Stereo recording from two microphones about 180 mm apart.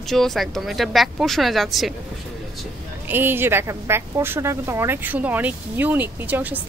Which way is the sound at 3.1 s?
10° right (ahead or behind).